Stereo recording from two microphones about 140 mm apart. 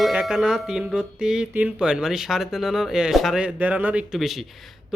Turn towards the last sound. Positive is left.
turn(degrees=0)  # may be behind; listen again after turning